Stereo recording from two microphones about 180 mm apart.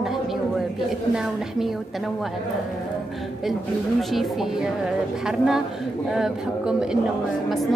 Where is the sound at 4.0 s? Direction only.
Centre (ahead or behind).